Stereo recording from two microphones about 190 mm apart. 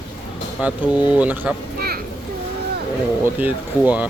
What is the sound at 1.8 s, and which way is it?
Children playing, 55° right (ahead or behind).